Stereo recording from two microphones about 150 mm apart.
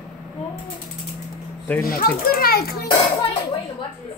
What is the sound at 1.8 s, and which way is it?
A child's voice, 80° left.